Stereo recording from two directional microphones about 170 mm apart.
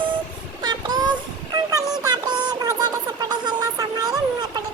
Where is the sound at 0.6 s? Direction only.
25° right (ahead or behind).